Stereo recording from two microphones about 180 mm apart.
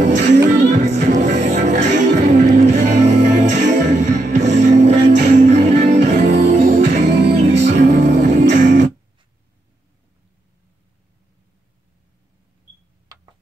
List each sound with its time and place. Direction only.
0.0 s music: 40° right (ahead or behind)
6.8 s music: 65° right (ahead or behind)
7.7 s music: 40° right (ahead or behind)